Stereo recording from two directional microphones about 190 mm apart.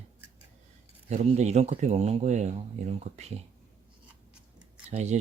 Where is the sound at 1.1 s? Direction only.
35° right (ahead or behind).